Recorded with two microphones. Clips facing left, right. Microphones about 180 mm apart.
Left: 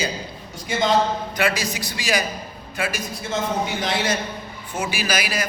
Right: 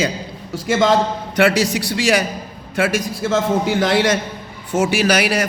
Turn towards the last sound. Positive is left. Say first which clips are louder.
# right 8 dB
turn(degrees=-70)  # may be behind; listen again after turning